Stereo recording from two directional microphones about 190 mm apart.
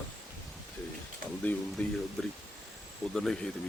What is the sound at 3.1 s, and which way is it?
Speech, centre (ahead or behind).